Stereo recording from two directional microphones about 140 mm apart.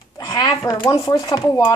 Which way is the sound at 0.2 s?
30° left (ahead or behind).